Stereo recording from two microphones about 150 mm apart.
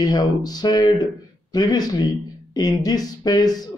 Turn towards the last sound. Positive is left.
turn(degrees=25)  # may be behind; listen again after turning